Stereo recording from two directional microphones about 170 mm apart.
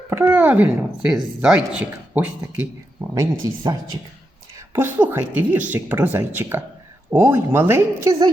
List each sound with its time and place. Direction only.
0.1 s a woman's voice: 10° right (ahead or behind)